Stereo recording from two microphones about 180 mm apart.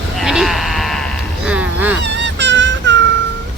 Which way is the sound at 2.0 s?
80° right.